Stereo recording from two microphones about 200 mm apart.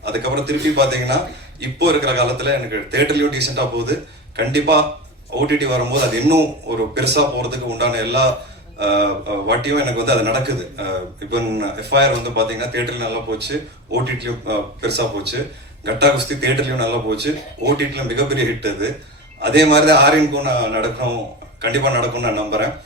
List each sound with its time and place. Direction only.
0.0 s a man's voice: 55° right (ahead or behind)